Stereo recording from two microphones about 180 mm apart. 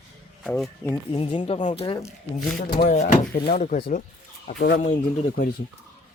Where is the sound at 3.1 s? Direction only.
60° left (ahead or behind).